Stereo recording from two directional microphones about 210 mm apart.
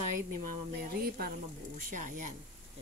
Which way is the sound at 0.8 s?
45° right (ahead or behind).